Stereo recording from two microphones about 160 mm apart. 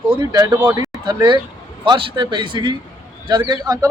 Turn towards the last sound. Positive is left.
turn(degrees=-25)  # may be behind; listen again after turning